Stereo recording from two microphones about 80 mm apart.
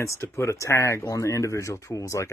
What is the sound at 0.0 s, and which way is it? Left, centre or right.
Speech, left.